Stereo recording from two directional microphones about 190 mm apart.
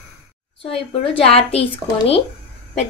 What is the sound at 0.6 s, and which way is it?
A woman's voice, 30° left (ahead or behind).